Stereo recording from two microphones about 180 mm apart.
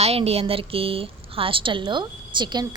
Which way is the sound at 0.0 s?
35° right (ahead or behind).